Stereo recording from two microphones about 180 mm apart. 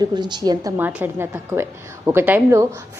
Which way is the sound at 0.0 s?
25° right (ahead or behind).